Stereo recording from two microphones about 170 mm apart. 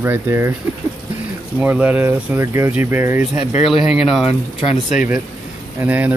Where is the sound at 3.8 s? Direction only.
5° right (ahead or behind).